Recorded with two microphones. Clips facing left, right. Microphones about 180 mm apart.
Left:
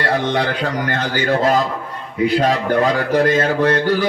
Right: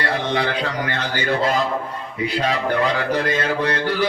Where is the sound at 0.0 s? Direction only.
45° left (ahead or behind).